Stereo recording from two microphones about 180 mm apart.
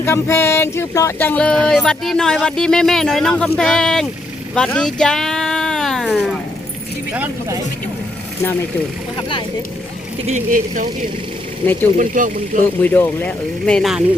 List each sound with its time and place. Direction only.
0.0 s speech: 15° left (ahead or behind)
7.1 s speech: 15° right (ahead or behind)
10.2 s speech: 45° right (ahead or behind)
11.9 s speech: 45° right (ahead or behind)
12.8 s speech: 10° left (ahead or behind)